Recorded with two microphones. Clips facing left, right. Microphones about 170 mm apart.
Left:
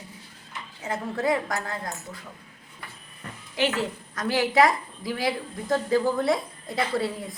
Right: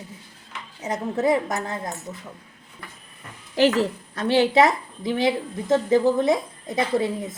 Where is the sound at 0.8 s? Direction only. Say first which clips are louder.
Right 4 dB; 20° right (ahead or behind).